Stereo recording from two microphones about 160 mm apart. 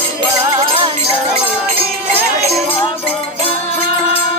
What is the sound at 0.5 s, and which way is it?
Music, 30° right (ahead or behind).